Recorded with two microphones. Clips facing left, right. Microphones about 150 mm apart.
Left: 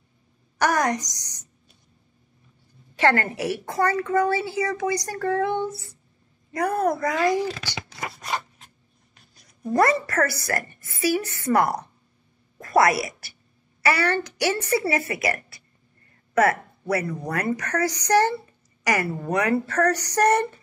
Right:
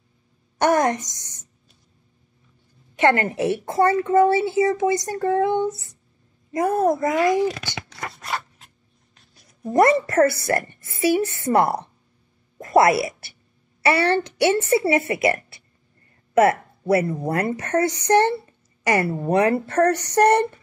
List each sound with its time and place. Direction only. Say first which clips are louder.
0.6 s a woman's voice: right 4 dB; 25° right (ahead or behind)
3.0 s a woman's voice: right 3 dB; 20° right (ahead or behind)
7.9 s a sound: even; 10° left (ahead or behind)
8.3 s zipper: even; centre (ahead or behind)
9.7 s a woman's voice: right 4 dB; 25° right (ahead or behind)